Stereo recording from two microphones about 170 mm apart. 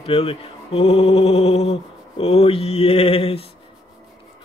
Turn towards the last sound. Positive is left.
turn(degrees=35)  # may be behind; listen again after turning